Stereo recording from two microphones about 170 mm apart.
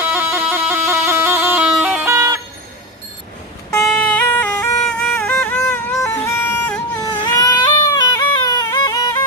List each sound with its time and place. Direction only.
0.0 s bagpipes: 15° right (ahead or behind)
1.7 s music: 5° right (ahead or behind)
3.8 s music: 10° left (ahead or behind)
7.0 s baby cry: 20° left (ahead or behind)